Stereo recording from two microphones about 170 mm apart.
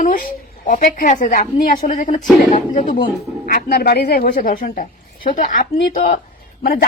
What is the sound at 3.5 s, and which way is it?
Speech, 65° left (ahead or behind).